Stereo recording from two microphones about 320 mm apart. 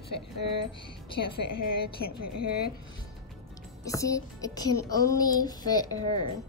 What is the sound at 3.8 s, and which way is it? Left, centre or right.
A woman's voice, centre.